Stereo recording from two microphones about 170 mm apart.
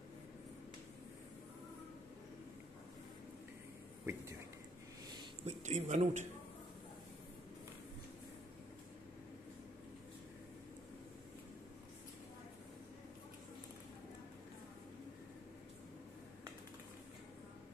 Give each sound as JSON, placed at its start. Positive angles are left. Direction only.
{"t": 4.0, "sound": "speech", "side_deg": -15}
{"t": 5.4, "sound": "a man's voice", "side_deg": -40}